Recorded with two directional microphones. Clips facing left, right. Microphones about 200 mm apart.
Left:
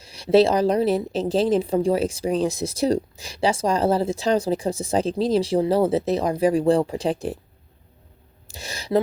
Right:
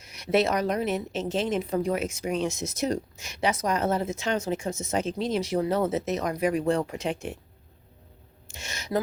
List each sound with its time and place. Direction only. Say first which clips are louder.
0.0 s a woman's voice: left 7 dB; 30° left (ahead or behind)
8.4 s speech: left 6 dB; 35° left (ahead or behind)